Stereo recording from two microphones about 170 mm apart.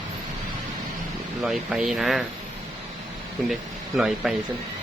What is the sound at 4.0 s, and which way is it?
Speech, 5° right (ahead or behind).